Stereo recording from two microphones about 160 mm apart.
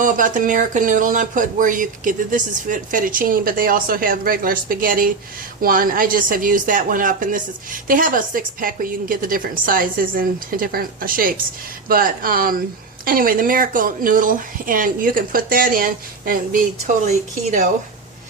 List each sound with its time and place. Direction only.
0.0 s speech: 55° right (ahead or behind)